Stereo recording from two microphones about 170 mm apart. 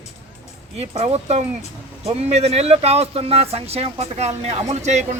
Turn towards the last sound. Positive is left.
turn(degrees=-40)  # may be behind; listen again after turning